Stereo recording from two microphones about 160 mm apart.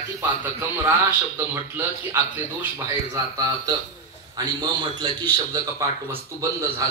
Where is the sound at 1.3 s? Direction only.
15° right (ahead or behind).